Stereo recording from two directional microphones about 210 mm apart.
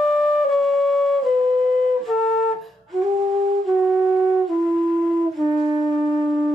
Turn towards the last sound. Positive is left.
turn(degrees=0)  # may be behind; listen again after turning